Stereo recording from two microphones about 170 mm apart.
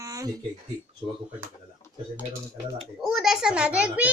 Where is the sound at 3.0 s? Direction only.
Centre (ahead or behind).